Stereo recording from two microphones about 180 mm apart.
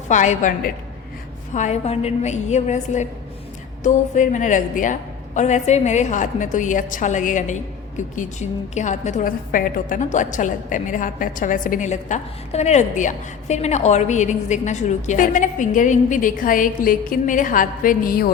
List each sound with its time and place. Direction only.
0.1 s a woman's voice: 45° left (ahead or behind)